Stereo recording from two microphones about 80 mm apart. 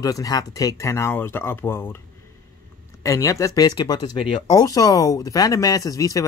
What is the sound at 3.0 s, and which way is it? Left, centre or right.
A man's voice, left.